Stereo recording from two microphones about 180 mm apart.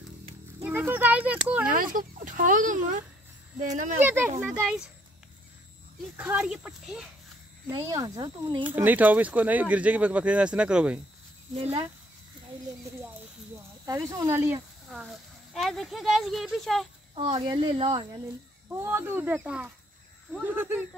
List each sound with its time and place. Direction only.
0.7 s a child's voice: 10° right (ahead or behind)
1.7 s speech: 50° right (ahead or behind)
4.0 s speech: 10° right (ahead or behind)
6.1 s speech: 5° right (ahead or behind)
7.7 s speech: 20° right (ahead or behind)
8.6 s speech: 10° right (ahead or behind)
11.5 s speech: 30° right (ahead or behind)
13.8 s speech: 20° right (ahead or behind)
14.9 s speech: centre (ahead or behind)
17.1 s speech: 30° right (ahead or behind)
18.7 s speech: 15° right (ahead or behind)